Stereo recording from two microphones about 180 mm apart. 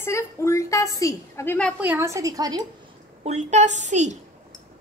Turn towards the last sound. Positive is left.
turn(degrees=-40)  # may be behind; listen again after turning